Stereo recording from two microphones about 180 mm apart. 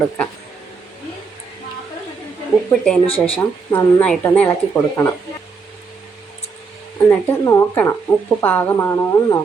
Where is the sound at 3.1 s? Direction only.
30° left (ahead or behind).